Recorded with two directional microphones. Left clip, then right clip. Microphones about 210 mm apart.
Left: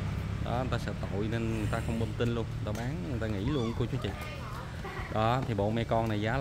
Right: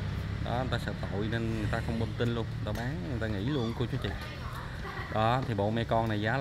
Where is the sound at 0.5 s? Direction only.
5° left (ahead or behind).